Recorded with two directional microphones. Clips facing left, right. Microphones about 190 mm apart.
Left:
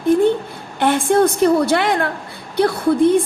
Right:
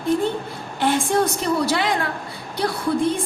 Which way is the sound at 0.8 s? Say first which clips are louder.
Left 5 dB; 60° left (ahead or behind).